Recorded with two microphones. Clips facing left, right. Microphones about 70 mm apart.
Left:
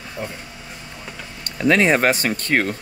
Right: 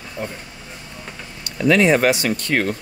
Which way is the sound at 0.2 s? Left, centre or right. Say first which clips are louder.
Right 1 dB; centre.